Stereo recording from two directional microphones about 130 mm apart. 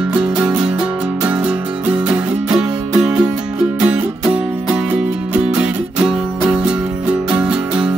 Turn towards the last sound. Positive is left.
turn(degrees=-10)  # may be behind; listen again after turning